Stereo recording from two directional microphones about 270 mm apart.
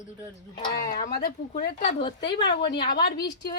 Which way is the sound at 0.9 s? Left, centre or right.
Left.